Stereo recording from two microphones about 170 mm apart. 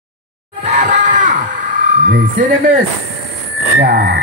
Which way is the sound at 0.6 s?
45° right (ahead or behind).